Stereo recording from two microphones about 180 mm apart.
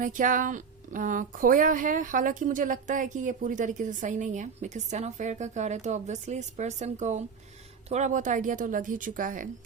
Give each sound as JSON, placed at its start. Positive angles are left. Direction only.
{"t": 0.0, "sound": "speech", "side_deg": -45}